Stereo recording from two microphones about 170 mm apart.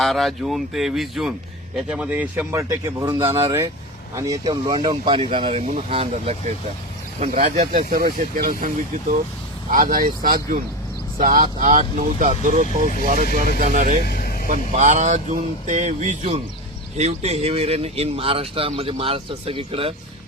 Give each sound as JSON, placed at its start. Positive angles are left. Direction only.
{"t": 0.0, "sound": "speech", "side_deg": 0}
{"t": 14.0, "sound": "vehicle", "side_deg": 65}
{"t": 14.4, "sound": "speech", "side_deg": -45}